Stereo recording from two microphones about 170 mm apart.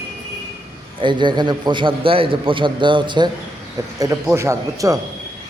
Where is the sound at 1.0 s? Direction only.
25° right (ahead or behind).